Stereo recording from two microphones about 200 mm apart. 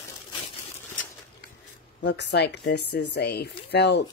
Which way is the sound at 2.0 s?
60° left (ahead or behind).